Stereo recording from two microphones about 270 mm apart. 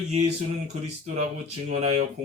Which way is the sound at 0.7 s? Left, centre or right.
Right.